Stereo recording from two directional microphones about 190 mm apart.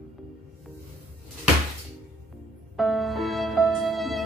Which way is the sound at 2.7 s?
Centre (ahead or behind).